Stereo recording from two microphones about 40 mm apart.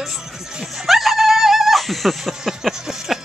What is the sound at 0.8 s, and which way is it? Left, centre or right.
Dog, centre.